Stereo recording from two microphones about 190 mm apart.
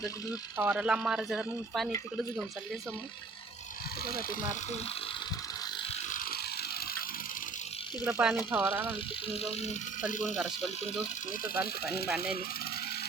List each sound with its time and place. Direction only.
0.5 s speech: 10° right (ahead or behind)
4.0 s speech: 50° left (ahead or behind)
6.1 s vehicle: 45° left (ahead or behind)
8.0 s speech: 5° right (ahead or behind)
9.3 s speech: 35° left (ahead or behind)
10.3 s speech: centre (ahead or behind)